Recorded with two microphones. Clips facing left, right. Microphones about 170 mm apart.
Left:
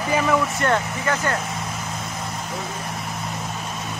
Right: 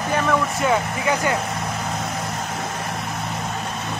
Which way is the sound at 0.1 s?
5° left (ahead or behind).